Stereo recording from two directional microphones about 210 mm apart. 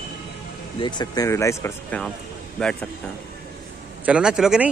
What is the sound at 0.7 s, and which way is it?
Speech, 20° left (ahead or behind).